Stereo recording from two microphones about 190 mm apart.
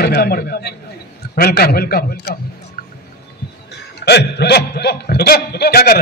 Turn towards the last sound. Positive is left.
turn(degrees=55)  # may be behind; listen again after turning